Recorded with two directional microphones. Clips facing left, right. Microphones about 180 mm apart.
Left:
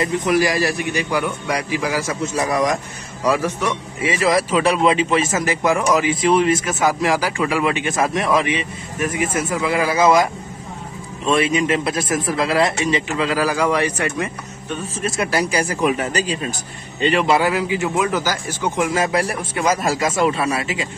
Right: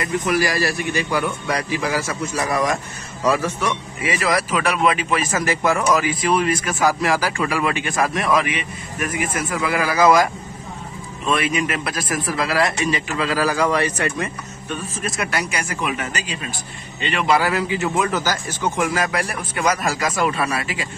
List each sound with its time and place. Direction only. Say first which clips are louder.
0.0 s a man's voice: left 3 dB; 20° left (ahead or behind)
4.0 s a man's voice: left 4 dB; 25° left (ahead or behind)
15.0 s speech: left 5 dB; 30° left (ahead or behind)
17.4 s a man's voice: left 2 dB; 15° left (ahead or behind)
18.9 s a man's voice: left 3 dB; 25° left (ahead or behind)